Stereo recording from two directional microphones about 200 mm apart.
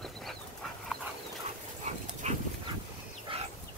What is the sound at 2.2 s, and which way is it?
Dog, 35° right (ahead or behind).